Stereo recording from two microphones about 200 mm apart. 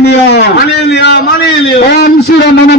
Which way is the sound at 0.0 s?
55° left (ahead or behind).